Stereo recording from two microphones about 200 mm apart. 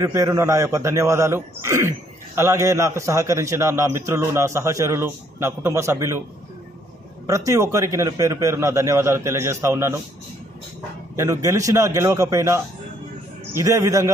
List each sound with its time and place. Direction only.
0.0 s a man's voice: 15° right (ahead or behind)
7.2 s a man's voice: 15° right (ahead or behind)
11.1 s a man's voice: 15° right (ahead or behind)